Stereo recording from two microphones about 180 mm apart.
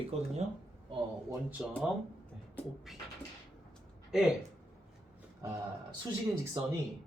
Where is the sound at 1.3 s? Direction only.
10° right (ahead or behind).